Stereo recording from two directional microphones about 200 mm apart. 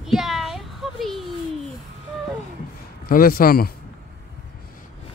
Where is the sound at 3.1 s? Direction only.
45° left (ahead or behind).